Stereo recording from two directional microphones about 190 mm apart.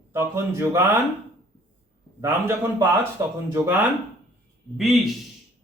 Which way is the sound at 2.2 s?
10° right (ahead or behind).